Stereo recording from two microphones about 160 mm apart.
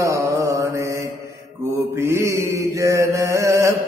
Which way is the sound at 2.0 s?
15° right (ahead or behind).